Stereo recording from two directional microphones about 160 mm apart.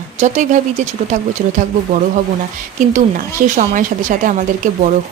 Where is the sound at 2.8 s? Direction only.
55° right (ahead or behind).